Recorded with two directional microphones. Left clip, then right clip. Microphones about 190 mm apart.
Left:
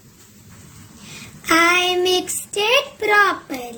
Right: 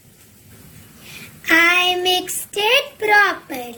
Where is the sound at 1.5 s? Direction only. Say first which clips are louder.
Right 1 dB; 40° left (ahead or behind).